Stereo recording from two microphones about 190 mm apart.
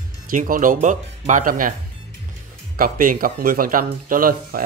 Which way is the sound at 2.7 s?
45° right (ahead or behind).